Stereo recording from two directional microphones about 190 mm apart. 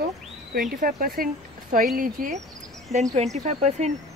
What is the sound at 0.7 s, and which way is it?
Speech, 45° right (ahead or behind).